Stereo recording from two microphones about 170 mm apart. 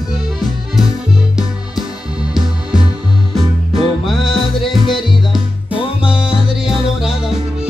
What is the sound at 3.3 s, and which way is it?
Music, centre (ahead or behind).